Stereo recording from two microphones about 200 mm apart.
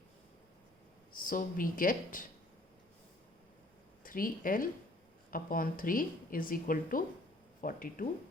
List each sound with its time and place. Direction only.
1.1 s a woman's voice: 45° left (ahead or behind)
4.0 s a woman's voice: 45° left (ahead or behind)